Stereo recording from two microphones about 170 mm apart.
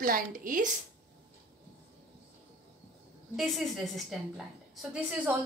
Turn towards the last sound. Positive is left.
turn(degrees=-5)  # may be behind; listen again after turning